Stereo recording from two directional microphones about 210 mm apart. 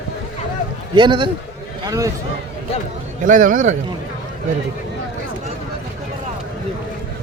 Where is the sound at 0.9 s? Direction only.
25° right (ahead or behind).